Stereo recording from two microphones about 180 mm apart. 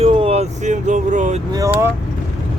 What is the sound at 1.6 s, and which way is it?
Speech, 15° right (ahead or behind).